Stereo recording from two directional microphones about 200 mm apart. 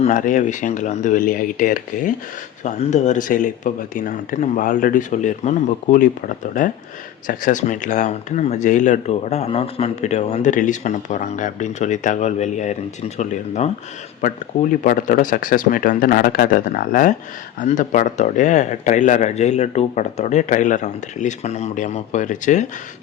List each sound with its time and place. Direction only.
0.0 s speech: 40° left (ahead or behind)